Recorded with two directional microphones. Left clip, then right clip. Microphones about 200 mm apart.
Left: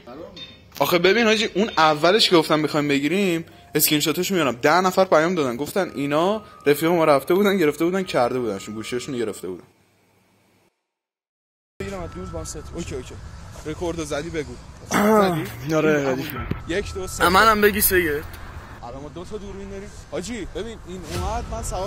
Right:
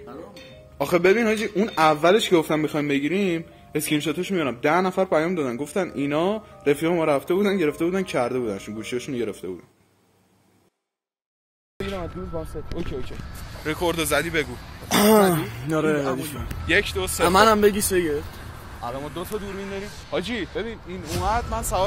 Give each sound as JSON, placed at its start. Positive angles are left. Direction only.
{"t": 0.7, "sound": "a man's voice", "side_deg": 0}
{"t": 12.7, "sound": "a man's voice", "side_deg": 5}
{"t": 15.0, "sound": "speech", "side_deg": -30}
{"t": 15.7, "sound": "a man's voice", "side_deg": -5}
{"t": 18.9, "sound": "speech", "side_deg": -40}
{"t": 19.7, "sound": "a man's voice", "side_deg": -5}